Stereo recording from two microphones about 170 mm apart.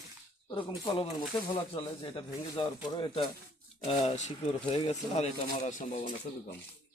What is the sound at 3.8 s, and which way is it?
Speech, 35° left (ahead or behind).